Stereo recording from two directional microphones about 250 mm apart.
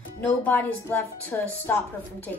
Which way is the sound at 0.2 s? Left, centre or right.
Centre.